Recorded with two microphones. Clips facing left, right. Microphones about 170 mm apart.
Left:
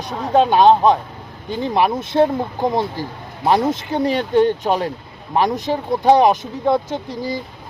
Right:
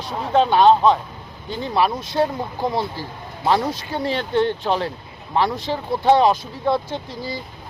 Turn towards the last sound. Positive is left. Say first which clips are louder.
# left 4 dB
turn(degrees=15)  # may be behind; listen again after turning